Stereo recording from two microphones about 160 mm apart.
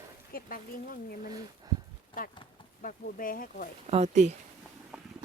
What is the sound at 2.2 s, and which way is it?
Speech, 60° left (ahead or behind).